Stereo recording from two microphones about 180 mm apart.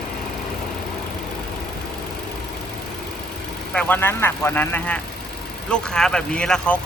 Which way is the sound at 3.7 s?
5° left (ahead or behind).